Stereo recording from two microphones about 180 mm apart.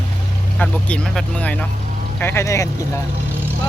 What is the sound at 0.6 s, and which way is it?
Speech, 5° left (ahead or behind).